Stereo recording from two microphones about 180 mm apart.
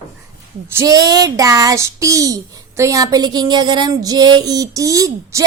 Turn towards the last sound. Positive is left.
turn(degrees=-20)  # may be behind; listen again after turning